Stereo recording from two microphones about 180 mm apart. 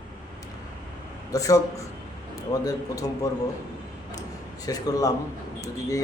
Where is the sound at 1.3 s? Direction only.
20° left (ahead or behind).